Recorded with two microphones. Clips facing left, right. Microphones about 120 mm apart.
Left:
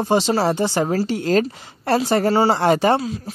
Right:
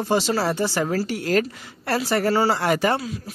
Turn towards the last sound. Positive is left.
turn(degrees=25)  # may be behind; listen again after turning